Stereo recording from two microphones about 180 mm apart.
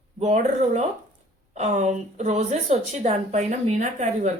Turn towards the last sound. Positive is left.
turn(degrees=-40)  # may be behind; listen again after turning